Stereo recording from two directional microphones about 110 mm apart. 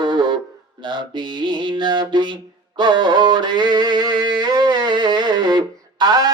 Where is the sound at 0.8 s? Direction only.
45° right (ahead or behind).